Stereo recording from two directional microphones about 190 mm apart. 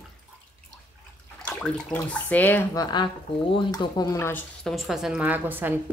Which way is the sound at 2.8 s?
25° left (ahead or behind).